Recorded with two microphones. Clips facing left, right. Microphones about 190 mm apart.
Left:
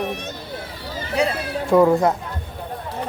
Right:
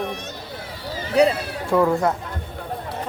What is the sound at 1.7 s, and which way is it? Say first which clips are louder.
Speech: left 4 dB; 20° left (ahead or behind).